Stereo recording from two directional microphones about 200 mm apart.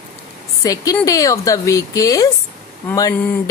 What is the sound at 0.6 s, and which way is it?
A woman's voice, 15° left (ahead or behind).